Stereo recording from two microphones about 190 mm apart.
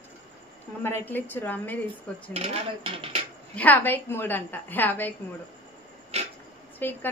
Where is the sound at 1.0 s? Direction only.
10° left (ahead or behind).